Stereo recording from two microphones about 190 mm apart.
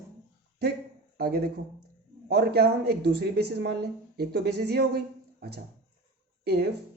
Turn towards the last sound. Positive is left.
turn(degrees=-60)  # may be behind; listen again after turning